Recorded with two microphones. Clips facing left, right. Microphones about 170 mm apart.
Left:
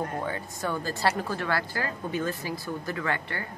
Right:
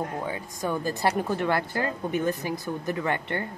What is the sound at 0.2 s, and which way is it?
A woman's voice, 15° right (ahead or behind).